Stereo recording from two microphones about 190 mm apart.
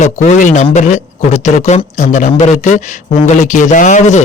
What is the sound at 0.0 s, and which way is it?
A man's voice, 40° left (ahead or behind).